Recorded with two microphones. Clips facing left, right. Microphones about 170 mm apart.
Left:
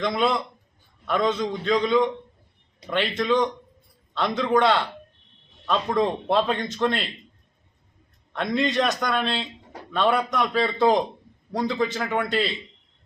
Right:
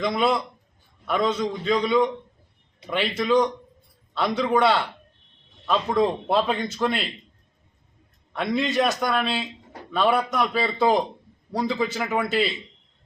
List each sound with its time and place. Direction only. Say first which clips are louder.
0.0 s a man's voice: right 1 dB; 5° right (ahead or behind)
8.3 s a man's voice: even; 5° right (ahead or behind)